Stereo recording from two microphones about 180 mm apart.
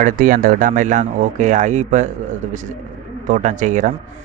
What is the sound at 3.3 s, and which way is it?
Speech, 45° right (ahead or behind).